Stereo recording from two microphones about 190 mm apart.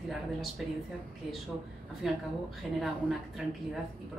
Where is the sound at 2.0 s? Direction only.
Centre (ahead or behind).